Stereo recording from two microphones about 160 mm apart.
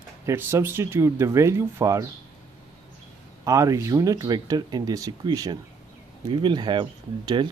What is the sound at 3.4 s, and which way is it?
Speech, 20° right (ahead or behind).